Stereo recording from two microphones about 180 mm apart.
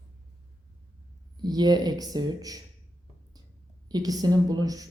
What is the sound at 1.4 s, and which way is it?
A woman's voice, 20° right (ahead or behind).